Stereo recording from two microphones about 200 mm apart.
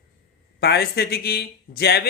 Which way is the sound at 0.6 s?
55° left (ahead or behind).